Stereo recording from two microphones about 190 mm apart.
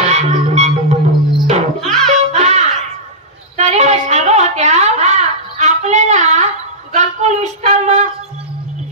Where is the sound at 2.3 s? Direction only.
35° right (ahead or behind).